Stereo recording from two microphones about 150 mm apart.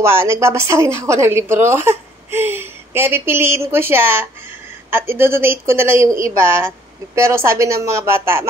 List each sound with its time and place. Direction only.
0.0 s speech: 15° right (ahead or behind)